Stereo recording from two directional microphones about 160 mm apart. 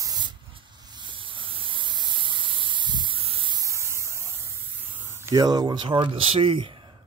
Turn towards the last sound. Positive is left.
turn(degrees=-35)  # may be behind; listen again after turning